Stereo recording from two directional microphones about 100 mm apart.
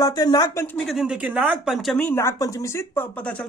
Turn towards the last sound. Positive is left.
turn(degrees=25)  # may be behind; listen again after turning